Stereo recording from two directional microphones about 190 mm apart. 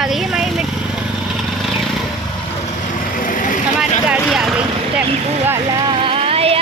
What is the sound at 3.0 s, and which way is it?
Vehicle, 45° left (ahead or behind).